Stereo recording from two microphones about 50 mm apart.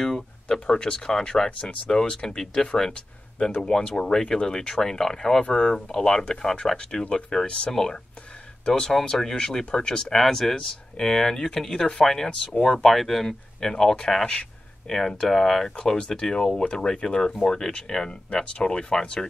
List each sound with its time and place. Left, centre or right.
0.0 s speech: centre
12.8 s speech: centre